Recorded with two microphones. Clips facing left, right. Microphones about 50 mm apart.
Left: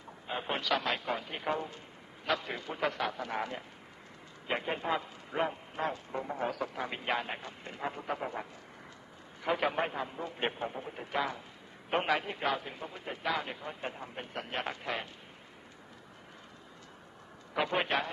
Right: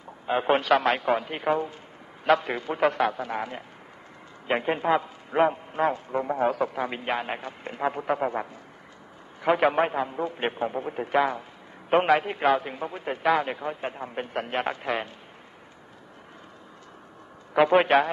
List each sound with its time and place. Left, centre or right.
0.3 s a man's voice: right
2.2 s a man's voice: right
3.2 s speech: centre
4.5 s a man's voice: right
7.2 s a man's voice: right
17.6 s a man's voice: right